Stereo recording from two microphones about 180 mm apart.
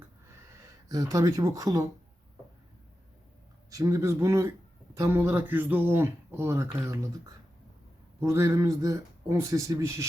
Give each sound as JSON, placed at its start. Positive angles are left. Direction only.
{"t": 0.9, "sound": "speech", "side_deg": -20}
{"t": 3.7, "sound": "speech", "side_deg": -15}
{"t": 8.2, "sound": "speech", "side_deg": -15}